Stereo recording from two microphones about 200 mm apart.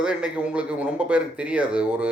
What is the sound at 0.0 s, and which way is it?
A man's voice, 5° right (ahead or behind).